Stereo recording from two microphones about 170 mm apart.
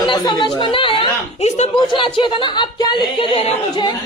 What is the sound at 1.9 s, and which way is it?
Speech, 30° left (ahead or behind).